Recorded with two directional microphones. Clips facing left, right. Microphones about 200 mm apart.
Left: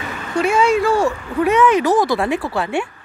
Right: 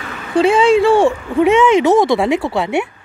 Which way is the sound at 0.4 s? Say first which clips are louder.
Right 5 dB; 30° right (ahead or behind).